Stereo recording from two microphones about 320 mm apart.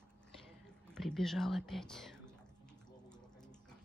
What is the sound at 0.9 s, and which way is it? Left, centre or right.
Speech, centre.